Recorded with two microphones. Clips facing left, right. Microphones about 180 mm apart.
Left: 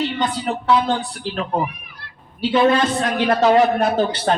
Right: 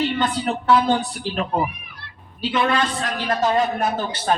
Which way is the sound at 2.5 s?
35° left (ahead or behind).